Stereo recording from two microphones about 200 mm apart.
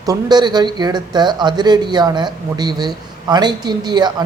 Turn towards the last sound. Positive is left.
turn(degrees=-20)  # may be behind; listen again after turning